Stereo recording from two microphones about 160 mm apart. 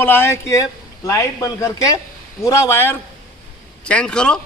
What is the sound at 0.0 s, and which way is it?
A man's voice, 15° left (ahead or behind).